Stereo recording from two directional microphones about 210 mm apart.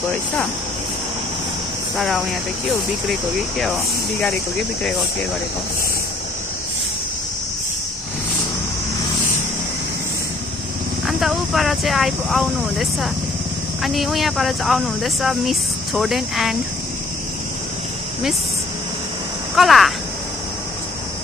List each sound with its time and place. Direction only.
2.0 s speech: centre (ahead or behind)
11.1 s speech: centre (ahead or behind)
19.5 s speech: centre (ahead or behind)